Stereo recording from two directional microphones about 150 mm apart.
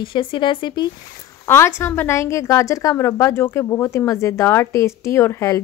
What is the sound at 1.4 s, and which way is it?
A woman's voice, 15° left (ahead or behind).